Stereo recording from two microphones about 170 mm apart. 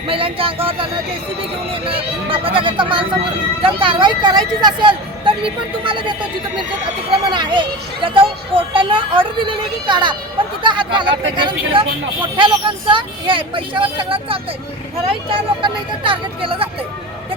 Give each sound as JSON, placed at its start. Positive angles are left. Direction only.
{"t": 0.1, "sound": "speech", "side_deg": -30}
{"t": 7.3, "sound": "speech", "side_deg": -30}